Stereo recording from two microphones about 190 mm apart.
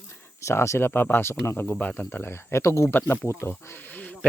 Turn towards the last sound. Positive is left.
turn(degrees=10)  # may be behind; listen again after turning